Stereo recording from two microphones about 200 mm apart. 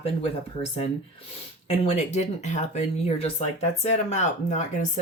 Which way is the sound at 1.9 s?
35° left (ahead or behind).